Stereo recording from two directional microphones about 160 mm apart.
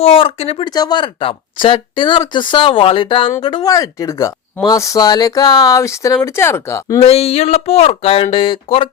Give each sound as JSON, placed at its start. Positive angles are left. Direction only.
{"t": 0.0, "sound": "speech", "side_deg": 35}
{"t": 0.7, "sound": "speech", "side_deg": 25}
{"t": 7.0, "sound": "speech", "side_deg": 40}